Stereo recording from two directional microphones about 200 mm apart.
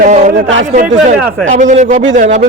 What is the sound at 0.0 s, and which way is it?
Speech, 35° right (ahead or behind).